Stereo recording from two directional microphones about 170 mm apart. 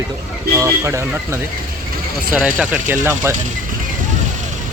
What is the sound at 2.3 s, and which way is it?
Speech, 5° right (ahead or behind).